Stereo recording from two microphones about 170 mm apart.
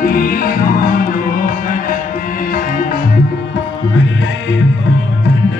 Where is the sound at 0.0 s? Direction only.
55° left (ahead or behind).